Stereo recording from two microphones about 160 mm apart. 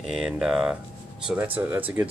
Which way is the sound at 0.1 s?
5° right (ahead or behind).